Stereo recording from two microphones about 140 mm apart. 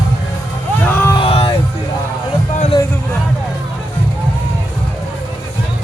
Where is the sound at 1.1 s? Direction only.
40° left (ahead or behind).